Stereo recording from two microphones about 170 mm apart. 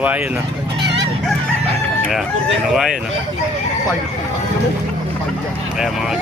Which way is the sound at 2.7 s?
Centre (ahead or behind).